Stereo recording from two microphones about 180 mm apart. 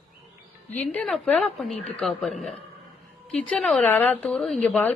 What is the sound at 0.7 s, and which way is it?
A woman's voice, 5° left (ahead or behind).